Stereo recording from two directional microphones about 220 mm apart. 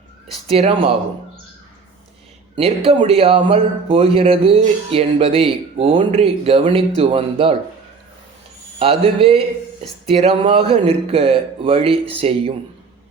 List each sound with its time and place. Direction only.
0.4 s speech: 25° right (ahead or behind)
2.6 s speech: 25° right (ahead or behind)
8.8 s speech: 25° right (ahead or behind)